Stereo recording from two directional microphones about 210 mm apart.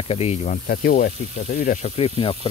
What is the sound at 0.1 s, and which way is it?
Speech, 30° left (ahead or behind).